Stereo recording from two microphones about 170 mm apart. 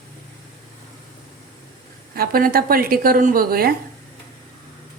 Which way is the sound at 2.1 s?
60° right (ahead or behind).